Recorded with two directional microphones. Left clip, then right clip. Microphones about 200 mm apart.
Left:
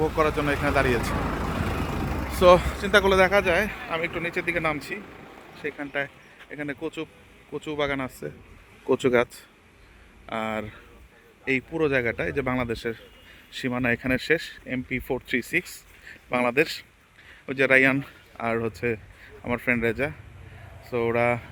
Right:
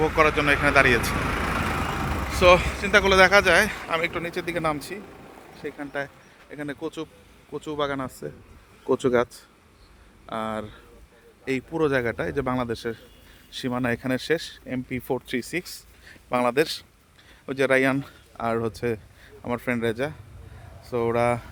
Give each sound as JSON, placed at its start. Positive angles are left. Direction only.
{"t": 0.0, "sound": "speech", "side_deg": 0}
{"t": 2.3, "sound": "speech", "side_deg": 15}
{"t": 4.9, "sound": "a sound", "side_deg": -55}
{"t": 5.7, "sound": "speech", "side_deg": 0}
{"t": 11.4, "sound": "speech", "side_deg": -10}